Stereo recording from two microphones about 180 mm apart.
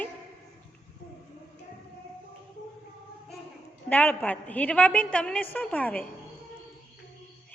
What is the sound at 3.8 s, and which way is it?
A woman's voice, 10° left (ahead or behind).